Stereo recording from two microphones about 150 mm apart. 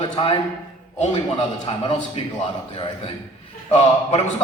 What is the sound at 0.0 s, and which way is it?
Speech, 40° left (ahead or behind).